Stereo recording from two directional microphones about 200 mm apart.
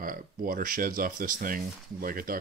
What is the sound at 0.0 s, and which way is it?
Speech, 45° right (ahead or behind).